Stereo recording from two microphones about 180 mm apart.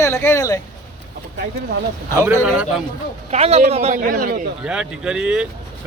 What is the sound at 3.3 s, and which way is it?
Speech, 35° right (ahead or behind).